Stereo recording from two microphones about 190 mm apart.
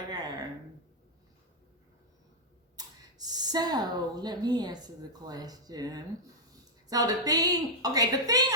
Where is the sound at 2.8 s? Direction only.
20° right (ahead or behind).